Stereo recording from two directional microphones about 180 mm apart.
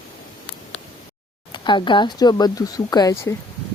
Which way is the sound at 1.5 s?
25° left (ahead or behind).